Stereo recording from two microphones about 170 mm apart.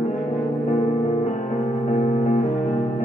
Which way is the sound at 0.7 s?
40° left (ahead or behind).